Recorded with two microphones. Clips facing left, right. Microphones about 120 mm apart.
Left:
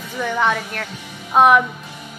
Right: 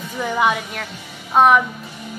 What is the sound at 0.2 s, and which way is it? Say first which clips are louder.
Speech: right 1 dB; 10° right (ahead or behind).